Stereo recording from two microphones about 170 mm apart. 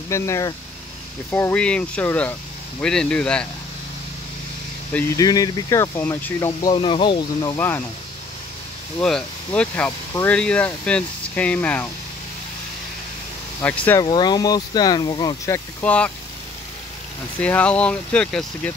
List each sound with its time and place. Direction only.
0.1 s speech: 20° left (ahead or behind)
5.1 s speech: 20° left (ahead or behind)
7.5 s speech: 10° left (ahead or behind)
9.0 s speech: 5° left (ahead or behind)
13.6 s speech: 10° left (ahead or behind)
14.0 s speech: 25° left (ahead or behind); by 16.1 s 10° left (ahead or behind)
17.4 s speech: 10° left (ahead or behind)